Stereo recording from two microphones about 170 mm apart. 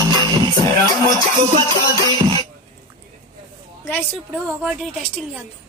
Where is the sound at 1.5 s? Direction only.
25° right (ahead or behind).